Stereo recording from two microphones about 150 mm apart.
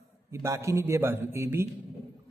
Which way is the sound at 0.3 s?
20° right (ahead or behind).